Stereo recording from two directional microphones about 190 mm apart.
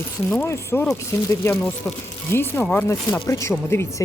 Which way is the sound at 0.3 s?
10° left (ahead or behind).